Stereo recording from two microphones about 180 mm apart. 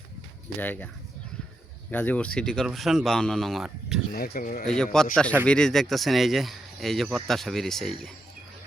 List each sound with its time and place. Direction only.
0.6 s speech: 10° left (ahead or behind)
1.9 s speech: 10° left (ahead or behind)
4.1 s speech: 55° left (ahead or behind)
4.6 s speech: 5° left (ahead or behind)